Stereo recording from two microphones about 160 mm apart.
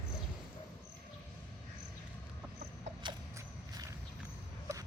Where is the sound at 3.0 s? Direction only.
30° right (ahead or behind).